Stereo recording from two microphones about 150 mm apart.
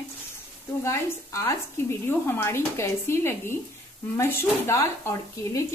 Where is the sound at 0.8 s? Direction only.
20° left (ahead or behind).